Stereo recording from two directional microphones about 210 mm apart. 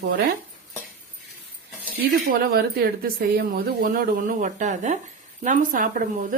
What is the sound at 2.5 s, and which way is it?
A woman's voice, 45° right (ahead or behind).